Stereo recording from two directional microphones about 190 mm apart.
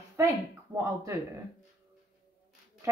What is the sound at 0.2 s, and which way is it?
Speech, 15° right (ahead or behind).